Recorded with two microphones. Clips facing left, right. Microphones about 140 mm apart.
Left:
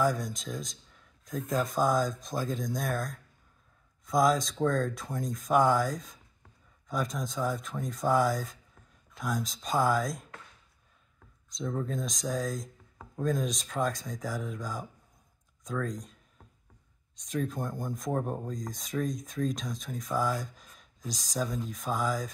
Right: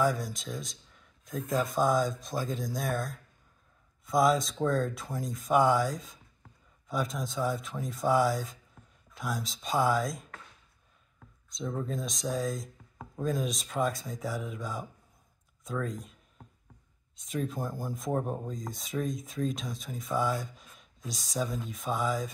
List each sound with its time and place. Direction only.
0.0 s speech: centre (ahead or behind)
11.5 s speech: 5° right (ahead or behind)